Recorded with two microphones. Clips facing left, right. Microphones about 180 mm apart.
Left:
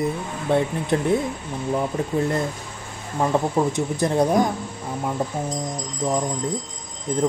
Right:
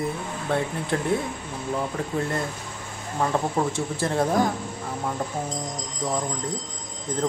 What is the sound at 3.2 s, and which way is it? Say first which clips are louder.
Speech: left 3 dB; 15° left (ahead or behind).